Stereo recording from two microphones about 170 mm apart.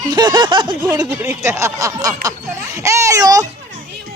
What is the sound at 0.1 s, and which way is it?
A woman's voice, 25° right (ahead or behind).